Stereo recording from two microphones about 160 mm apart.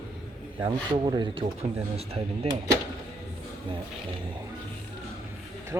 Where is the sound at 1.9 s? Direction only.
40° right (ahead or behind).